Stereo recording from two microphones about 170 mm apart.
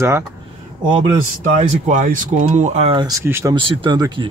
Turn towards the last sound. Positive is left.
turn(degrees=-25)  # may be behind; listen again after turning